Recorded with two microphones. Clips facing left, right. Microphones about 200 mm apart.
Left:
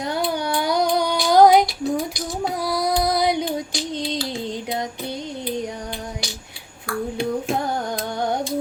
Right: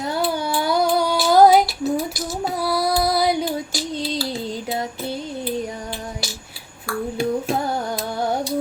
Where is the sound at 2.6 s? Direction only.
15° left (ahead or behind).